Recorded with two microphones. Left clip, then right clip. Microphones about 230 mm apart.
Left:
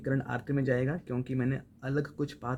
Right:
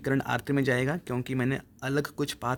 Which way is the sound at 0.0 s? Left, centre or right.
Right.